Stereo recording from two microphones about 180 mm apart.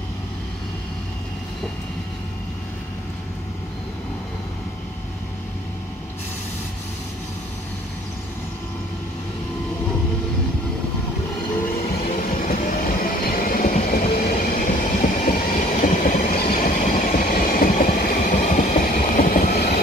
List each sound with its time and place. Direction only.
12.0 s train: 45° left (ahead or behind)